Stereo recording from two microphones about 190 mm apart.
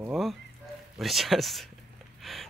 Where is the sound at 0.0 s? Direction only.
Centre (ahead or behind).